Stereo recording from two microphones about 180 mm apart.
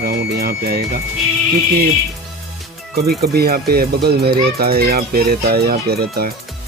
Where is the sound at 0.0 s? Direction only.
55° right (ahead or behind).